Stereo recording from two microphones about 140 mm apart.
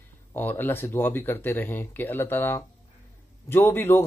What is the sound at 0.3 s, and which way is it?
Speech, 15° left (ahead or behind).